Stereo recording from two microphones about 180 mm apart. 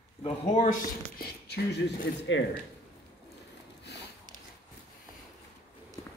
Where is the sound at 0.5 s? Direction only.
50° left (ahead or behind).